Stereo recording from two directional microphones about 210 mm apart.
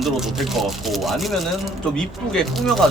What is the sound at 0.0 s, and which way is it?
Speech, centre (ahead or behind).